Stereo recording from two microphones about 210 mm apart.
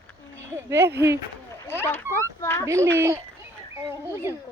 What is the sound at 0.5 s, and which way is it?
Speech, 10° right (ahead or behind).